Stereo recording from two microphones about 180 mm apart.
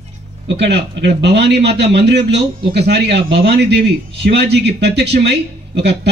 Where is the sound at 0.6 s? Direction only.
70° right (ahead or behind).